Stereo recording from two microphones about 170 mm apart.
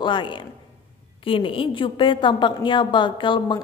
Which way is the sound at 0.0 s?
30° left (ahead or behind).